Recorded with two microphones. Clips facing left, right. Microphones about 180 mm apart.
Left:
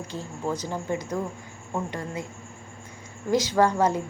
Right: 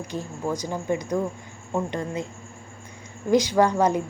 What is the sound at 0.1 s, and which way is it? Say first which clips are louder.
A woman's voice: right 2 dB; 15° right (ahead or behind).